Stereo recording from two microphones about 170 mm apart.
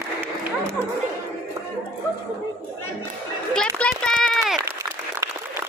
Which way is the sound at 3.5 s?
5° left (ahead or behind).